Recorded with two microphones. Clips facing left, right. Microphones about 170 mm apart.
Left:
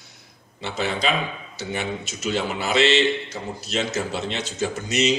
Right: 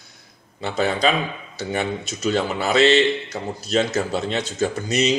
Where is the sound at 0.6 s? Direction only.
40° right (ahead or behind).